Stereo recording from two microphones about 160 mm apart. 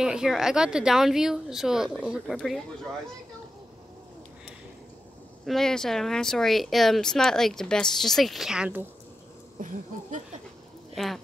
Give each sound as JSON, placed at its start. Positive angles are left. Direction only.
{"t": 0.0, "sound": "speech", "side_deg": -5}
{"t": 5.4, "sound": "speech", "side_deg": 0}
{"t": 9.6, "sound": "a sound", "side_deg": -55}
{"t": 11.0, "sound": "speech", "side_deg": 0}